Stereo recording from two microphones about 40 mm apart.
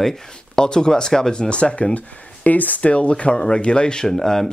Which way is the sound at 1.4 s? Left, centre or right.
Left.